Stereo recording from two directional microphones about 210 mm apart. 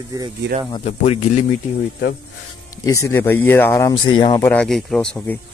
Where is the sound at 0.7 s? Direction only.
30° left (ahead or behind).